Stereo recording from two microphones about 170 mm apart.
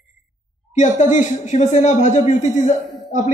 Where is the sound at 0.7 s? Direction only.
45° left (ahead or behind).